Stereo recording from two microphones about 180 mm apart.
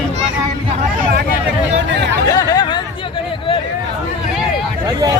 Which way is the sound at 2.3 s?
20° left (ahead or behind).